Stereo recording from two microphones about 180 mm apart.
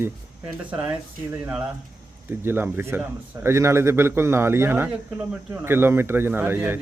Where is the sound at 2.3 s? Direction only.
10° right (ahead or behind).